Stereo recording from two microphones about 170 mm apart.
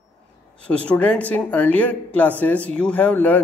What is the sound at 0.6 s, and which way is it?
Speech, 5° left (ahead or behind).